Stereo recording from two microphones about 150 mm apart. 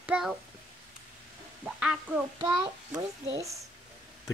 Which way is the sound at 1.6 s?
5° right (ahead or behind).